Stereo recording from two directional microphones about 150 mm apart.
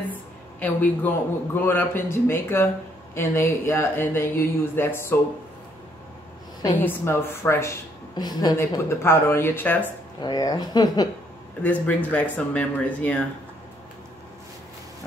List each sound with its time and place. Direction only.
0.6 s a man's voice: 10° left (ahead or behind)
6.8 s a man's voice: 15° left (ahead or behind)
8.2 s a man's voice: 25° left (ahead or behind)
10.2 s speech: 30° left (ahead or behind)
11.6 s a man's voice: 10° left (ahead or behind)